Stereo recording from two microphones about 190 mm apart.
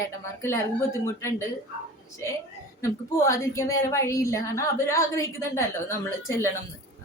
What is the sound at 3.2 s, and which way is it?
A woman's voice, 15° left (ahead or behind).